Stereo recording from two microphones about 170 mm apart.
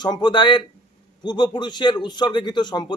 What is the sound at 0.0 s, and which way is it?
A man's voice, 25° left (ahead or behind).